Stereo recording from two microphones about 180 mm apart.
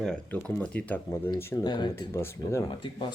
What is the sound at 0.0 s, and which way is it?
Speech, 5° left (ahead or behind).